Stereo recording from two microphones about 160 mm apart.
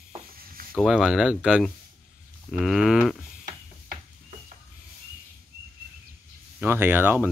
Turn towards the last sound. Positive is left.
turn(degrees=-10)  # may be behind; listen again after turning